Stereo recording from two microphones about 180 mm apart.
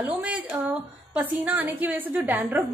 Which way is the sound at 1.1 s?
10° right (ahead or behind).